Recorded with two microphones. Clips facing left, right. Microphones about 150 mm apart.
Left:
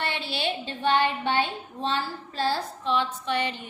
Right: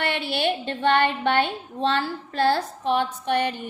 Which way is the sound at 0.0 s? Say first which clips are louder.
Right 5 dB; 60° right (ahead or behind).